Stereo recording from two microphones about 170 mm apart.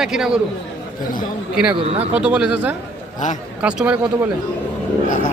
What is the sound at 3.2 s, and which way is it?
Speech, 45° left (ahead or behind).